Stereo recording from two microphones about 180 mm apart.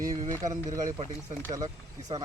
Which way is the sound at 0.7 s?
20° right (ahead or behind).